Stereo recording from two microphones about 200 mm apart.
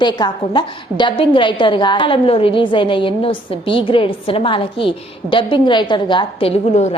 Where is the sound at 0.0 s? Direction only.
20° left (ahead or behind).